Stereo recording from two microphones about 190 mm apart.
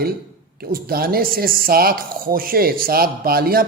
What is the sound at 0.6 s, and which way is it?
Speech, 50° right (ahead or behind).